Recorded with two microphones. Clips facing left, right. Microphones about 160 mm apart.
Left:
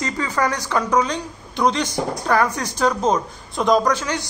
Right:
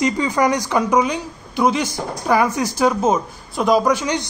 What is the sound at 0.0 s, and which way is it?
Speech, 15° right (ahead or behind).